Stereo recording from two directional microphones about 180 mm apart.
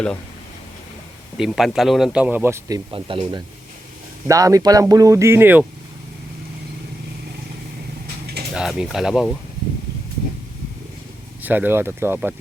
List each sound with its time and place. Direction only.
1.4 s speech: centre (ahead or behind); by 2.8 s 15° right (ahead or behind)
2.9 s speech: 30° right (ahead or behind)
4.3 s speech: 20° right (ahead or behind)
8.5 s speech: 5° right (ahead or behind)
11.4 s speech: 10° right (ahead or behind)